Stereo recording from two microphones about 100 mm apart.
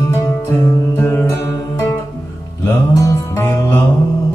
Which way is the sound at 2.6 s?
25° left (ahead or behind).